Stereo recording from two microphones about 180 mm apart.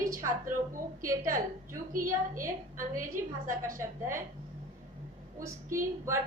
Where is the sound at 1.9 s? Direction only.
50° right (ahead or behind).